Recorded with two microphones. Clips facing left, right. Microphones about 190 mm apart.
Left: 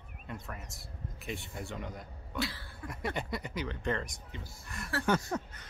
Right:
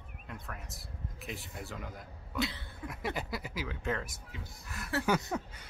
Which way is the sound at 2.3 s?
20° right (ahead or behind).